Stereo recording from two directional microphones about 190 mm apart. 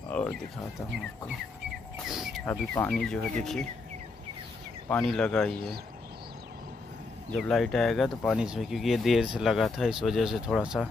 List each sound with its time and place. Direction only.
0.1 s a sound: 5° left (ahead or behind)
2.0 s bird: centre (ahead or behind)
2.4 s speech: 10° left (ahead or behind)
4.8 s speech: 5° left (ahead or behind)
7.2 s speech: 5° left (ahead or behind)